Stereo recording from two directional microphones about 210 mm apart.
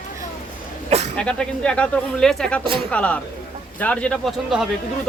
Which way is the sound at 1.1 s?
5° left (ahead or behind).